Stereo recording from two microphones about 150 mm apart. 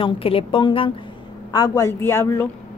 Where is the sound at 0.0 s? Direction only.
40° left (ahead or behind).